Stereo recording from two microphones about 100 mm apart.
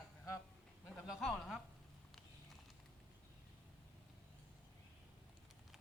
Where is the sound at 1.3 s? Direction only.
5° left (ahead or behind).